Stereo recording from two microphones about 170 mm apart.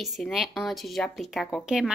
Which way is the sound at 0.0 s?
Centre (ahead or behind).